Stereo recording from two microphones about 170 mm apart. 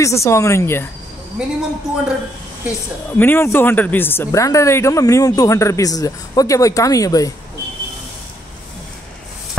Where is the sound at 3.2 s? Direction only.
10° left (ahead or behind).